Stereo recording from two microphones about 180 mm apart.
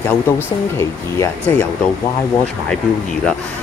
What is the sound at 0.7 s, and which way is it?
Speech, 15° left (ahead or behind).